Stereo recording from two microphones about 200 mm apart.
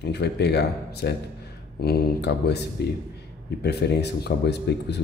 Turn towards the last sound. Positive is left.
turn(degrees=55)  # may be behind; listen again after turning